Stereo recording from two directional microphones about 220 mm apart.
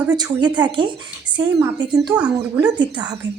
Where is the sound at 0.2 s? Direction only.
20° right (ahead or behind).